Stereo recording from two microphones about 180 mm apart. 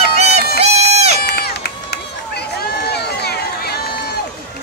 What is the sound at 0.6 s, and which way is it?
Run, 35° right (ahead or behind).